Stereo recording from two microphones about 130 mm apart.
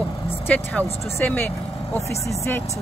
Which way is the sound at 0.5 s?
15° left (ahead or behind).